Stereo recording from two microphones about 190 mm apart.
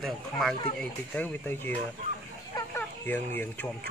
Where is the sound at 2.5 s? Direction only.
15° left (ahead or behind).